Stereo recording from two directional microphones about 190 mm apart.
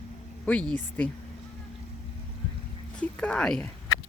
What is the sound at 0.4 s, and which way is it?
Speech, 5° left (ahead or behind).